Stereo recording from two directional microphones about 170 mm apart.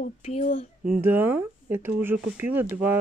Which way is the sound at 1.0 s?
10° right (ahead or behind).